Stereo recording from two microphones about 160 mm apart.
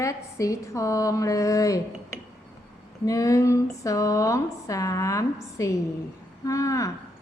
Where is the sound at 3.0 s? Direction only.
20° left (ahead or behind).